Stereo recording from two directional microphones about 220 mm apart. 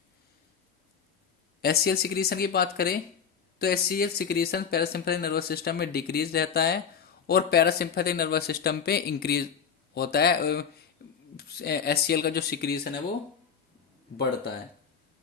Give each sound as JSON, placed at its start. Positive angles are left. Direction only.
{"t": 1.6, "sound": "speech", "side_deg": 45}
{"t": 11.0, "sound": "rub", "side_deg": 45}
{"t": 11.3, "sound": "speech", "side_deg": 45}